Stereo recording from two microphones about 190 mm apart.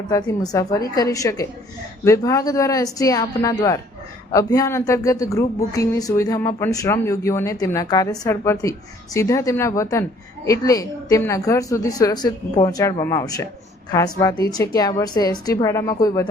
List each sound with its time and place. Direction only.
0.1 s a woman's voice: 20° left (ahead or behind)